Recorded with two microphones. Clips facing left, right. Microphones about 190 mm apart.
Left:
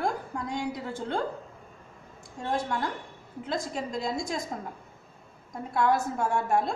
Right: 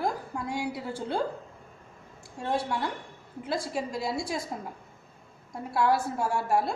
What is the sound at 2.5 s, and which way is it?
A woman's voice, 10° right (ahead or behind).